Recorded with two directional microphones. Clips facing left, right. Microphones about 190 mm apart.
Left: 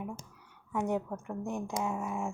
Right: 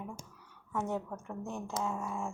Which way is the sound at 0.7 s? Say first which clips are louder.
Left 3 dB; 15° left (ahead or behind).